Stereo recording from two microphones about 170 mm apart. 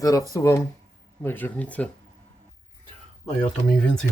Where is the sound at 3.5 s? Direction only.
5° left (ahead or behind).